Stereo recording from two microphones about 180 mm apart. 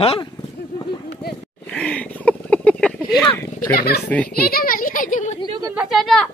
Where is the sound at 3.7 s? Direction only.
60° left (ahead or behind).